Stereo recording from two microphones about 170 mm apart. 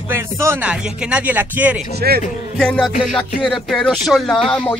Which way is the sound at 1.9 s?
65° right (ahead or behind).